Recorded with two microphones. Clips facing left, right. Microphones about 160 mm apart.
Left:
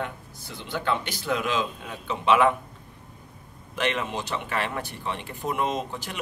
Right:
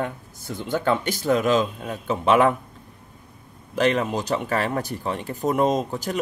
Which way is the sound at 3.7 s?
40° right (ahead or behind).